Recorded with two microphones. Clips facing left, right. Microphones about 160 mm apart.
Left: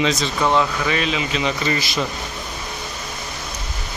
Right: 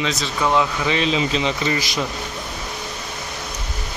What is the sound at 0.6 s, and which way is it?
Speech, 20° right (ahead or behind).